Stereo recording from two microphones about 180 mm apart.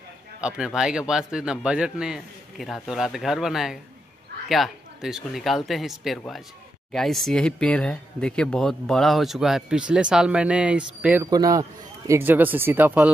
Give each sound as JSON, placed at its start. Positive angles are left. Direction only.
{"t": 0.4, "sound": "speech", "side_deg": -5}
{"t": 11.2, "sound": "a man's voice", "side_deg": -20}